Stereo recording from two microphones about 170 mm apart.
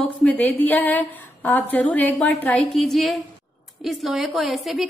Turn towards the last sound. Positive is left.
turn(degrees=0)  # may be behind; listen again after turning